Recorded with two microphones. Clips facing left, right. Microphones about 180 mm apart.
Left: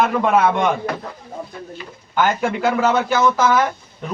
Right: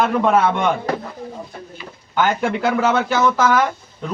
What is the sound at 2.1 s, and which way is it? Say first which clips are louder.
A man's voice: even; 5° left (ahead or behind).